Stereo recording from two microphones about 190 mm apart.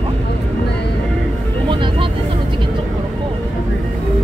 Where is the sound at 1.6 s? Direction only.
25° right (ahead or behind).